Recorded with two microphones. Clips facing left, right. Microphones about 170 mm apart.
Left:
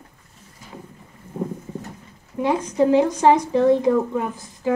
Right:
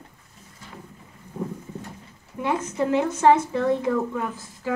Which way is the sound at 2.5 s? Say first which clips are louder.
Left 6 dB; 15° left (ahead or behind).